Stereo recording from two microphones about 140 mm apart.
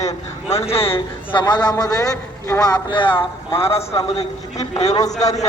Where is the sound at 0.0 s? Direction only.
50° left (ahead or behind).